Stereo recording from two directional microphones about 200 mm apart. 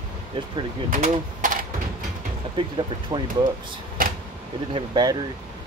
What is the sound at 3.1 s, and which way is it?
Speech, 20° right (ahead or behind).